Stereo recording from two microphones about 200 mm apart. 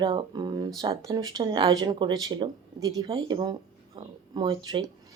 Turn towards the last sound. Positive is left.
turn(degrees=-20)  # may be behind; listen again after turning